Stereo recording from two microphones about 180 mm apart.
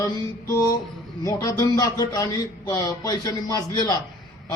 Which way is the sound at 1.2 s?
20° left (ahead or behind).